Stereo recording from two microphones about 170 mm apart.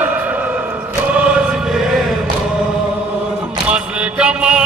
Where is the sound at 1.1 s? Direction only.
5° right (ahead or behind).